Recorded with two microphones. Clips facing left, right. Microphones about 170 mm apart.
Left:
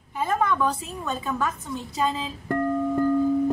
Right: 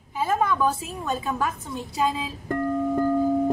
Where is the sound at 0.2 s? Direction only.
5° right (ahead or behind).